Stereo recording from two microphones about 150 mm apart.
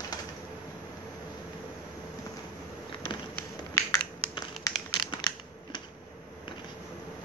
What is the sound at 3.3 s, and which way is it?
Tap, 15° left (ahead or behind).